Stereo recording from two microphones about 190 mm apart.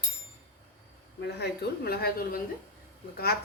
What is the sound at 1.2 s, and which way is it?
A woman's voice, 60° left (ahead or behind).